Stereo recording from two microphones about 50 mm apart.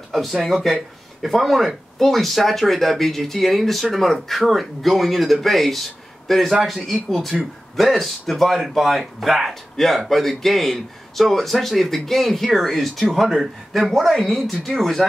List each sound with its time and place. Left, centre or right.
0.1 s speech: centre